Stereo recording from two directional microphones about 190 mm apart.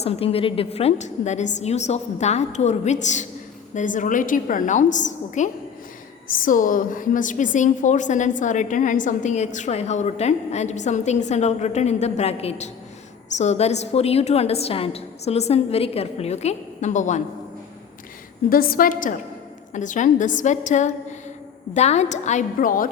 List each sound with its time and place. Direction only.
0.0 s a woman's voice: 30° left (ahead or behind)
18.4 s a woman's voice: 50° left (ahead or behind)